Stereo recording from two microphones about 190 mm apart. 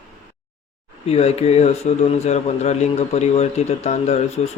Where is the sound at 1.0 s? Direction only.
35° left (ahead or behind).